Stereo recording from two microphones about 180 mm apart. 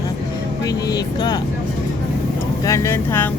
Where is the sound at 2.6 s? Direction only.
15° left (ahead or behind).